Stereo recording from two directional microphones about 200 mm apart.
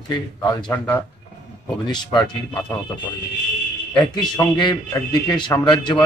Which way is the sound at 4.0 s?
20° left (ahead or behind).